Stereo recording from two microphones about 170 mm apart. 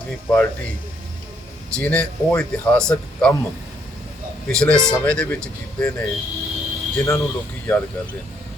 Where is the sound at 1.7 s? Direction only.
5° left (ahead or behind).